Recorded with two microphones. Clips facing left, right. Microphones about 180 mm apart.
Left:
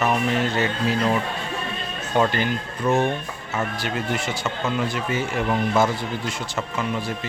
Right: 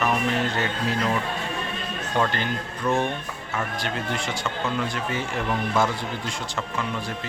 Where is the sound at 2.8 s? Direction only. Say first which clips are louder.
Left 3 dB; 20° left (ahead or behind).